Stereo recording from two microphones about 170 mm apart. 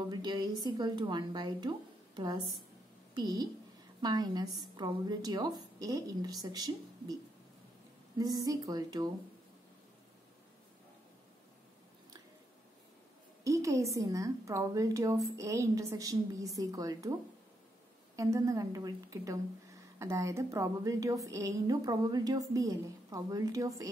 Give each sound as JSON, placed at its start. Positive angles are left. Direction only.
{"t": 0.1, "sound": "a woman's voice", "side_deg": -25}
{"t": 8.2, "sound": "a woman's voice", "side_deg": -20}
{"t": 13.4, "sound": "a woman's voice", "side_deg": -20}
{"t": 18.1, "sound": "a woman's voice", "side_deg": -20}